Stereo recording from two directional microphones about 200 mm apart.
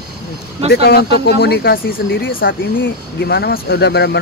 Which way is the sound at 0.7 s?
50° left (ahead or behind).